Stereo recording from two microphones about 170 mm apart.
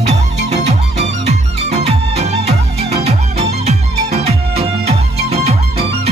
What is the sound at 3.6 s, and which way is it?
Music, 40° right (ahead or behind).